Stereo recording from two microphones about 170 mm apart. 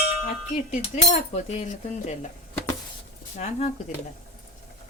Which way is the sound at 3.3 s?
40° left (ahead or behind).